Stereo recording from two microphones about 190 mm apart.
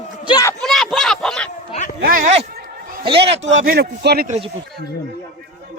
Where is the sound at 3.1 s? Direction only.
30° right (ahead or behind).